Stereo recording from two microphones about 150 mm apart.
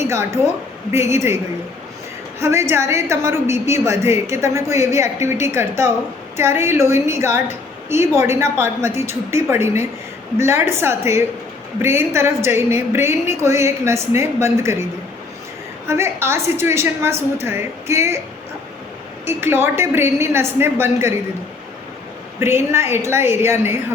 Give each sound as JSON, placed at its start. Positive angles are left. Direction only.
{"t": 0.1, "sound": "a woman's voice", "side_deg": -20}
{"t": 2.4, "sound": "a woman's voice", "side_deg": -20}
{"t": 15.9, "sound": "a woman's voice", "side_deg": -15}
{"t": 19.2, "sound": "a woman's voice", "side_deg": -15}
{"t": 22.4, "sound": "a woman's voice", "side_deg": -15}